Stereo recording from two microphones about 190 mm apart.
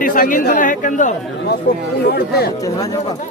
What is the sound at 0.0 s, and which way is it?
Speech, 45° left (ahead or behind).